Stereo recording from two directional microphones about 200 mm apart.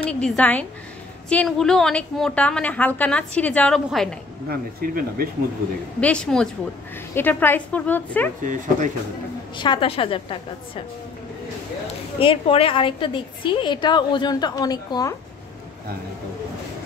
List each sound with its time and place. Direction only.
0.0 s a woman's voice: 5° left (ahead or behind)
4.5 s speech: 45° right (ahead or behind)
5.9 s a woman's voice: 5° left (ahead or behind)
8.5 s speech: 40° right (ahead or behind)
9.6 s a woman's voice: 25° left (ahead or behind)
12.2 s a woman's voice: 25° left (ahead or behind)